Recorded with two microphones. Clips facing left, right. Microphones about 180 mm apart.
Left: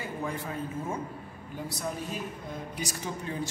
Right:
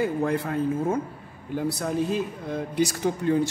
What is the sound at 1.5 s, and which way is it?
Speech, 90° right.